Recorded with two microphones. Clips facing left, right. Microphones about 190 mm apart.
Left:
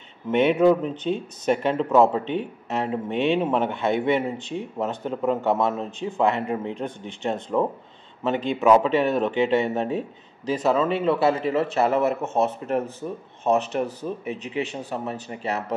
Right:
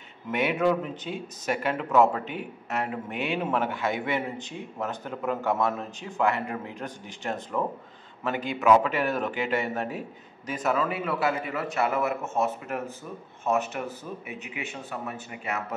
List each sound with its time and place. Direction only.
0.3 s speech: 25° left (ahead or behind)